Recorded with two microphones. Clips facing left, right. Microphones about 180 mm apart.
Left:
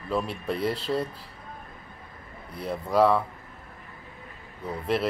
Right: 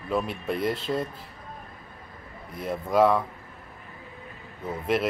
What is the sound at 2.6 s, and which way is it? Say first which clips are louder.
Speech: right 1 dB; centre (ahead or behind).